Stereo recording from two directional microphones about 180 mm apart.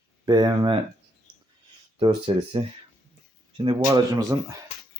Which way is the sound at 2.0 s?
30° right (ahead or behind).